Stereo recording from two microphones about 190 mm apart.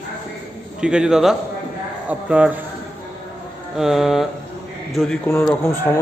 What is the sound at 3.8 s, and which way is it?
A man's voice, centre (ahead or behind).